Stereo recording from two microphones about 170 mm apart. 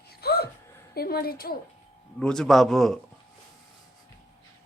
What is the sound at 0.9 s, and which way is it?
Speech, 65° left (ahead or behind).